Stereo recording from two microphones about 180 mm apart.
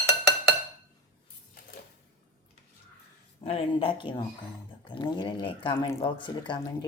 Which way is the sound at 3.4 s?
35° left (ahead or behind).